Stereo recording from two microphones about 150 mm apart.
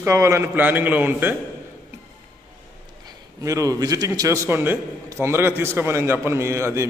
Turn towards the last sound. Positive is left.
turn(degrees=-20)  # may be behind; listen again after turning